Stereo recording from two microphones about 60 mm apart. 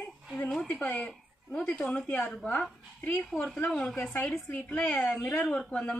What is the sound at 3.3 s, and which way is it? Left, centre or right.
Speech, centre.